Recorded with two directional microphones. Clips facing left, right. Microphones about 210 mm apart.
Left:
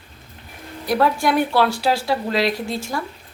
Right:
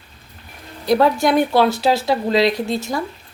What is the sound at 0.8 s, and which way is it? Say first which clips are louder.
Speech: right 3 dB; 20° right (ahead or behind).